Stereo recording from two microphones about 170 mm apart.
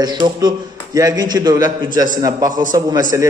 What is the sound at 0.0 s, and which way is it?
A man's voice, 25° right (ahead or behind).